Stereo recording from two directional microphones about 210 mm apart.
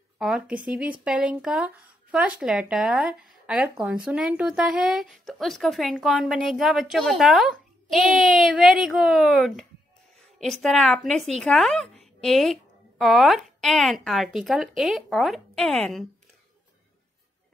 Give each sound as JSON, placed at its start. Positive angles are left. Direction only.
{"t": 0.2, "sound": "a woman's voice", "side_deg": -5}